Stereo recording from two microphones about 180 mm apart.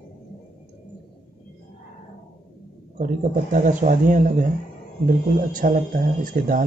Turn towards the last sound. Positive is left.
turn(degrees=-50)  # may be behind; listen again after turning